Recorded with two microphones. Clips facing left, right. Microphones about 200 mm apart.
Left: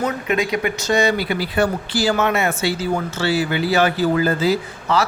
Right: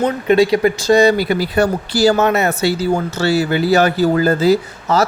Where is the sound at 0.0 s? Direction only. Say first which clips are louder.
Right 8 dB; 30° right (ahead or behind).